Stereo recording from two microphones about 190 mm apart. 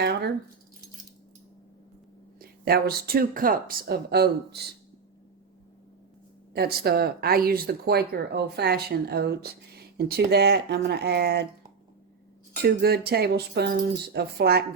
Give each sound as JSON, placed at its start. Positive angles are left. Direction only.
{"t": 0.0, "sound": "speech", "side_deg": -55}
{"t": 2.4, "sound": "speech", "side_deg": -55}
{"t": 6.5, "sound": "speech", "side_deg": -55}
{"t": 12.6, "sound": "speech", "side_deg": -55}